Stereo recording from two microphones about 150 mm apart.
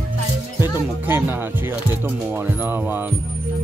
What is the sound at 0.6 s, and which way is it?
Speech, 15° right (ahead or behind).